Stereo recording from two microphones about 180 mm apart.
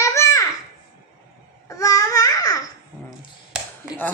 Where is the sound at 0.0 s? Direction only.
15° left (ahead or behind).